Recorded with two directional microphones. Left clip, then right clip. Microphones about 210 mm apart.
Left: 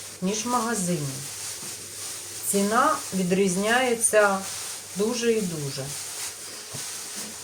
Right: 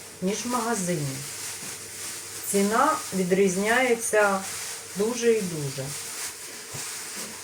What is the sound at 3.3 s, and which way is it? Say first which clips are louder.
Speech: even; 5° left (ahead or behind).